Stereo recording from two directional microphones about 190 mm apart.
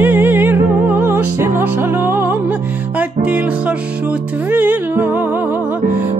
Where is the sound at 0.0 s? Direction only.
10° right (ahead or behind).